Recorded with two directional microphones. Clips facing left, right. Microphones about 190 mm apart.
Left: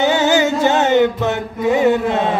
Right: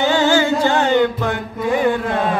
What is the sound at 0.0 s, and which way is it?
Music, 20° left (ahead or behind).